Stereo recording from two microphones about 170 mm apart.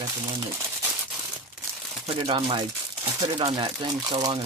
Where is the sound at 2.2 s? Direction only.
30° right (ahead or behind).